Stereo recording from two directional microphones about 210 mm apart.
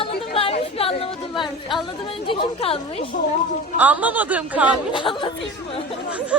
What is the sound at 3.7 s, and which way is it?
Speech, 5° right (ahead or behind).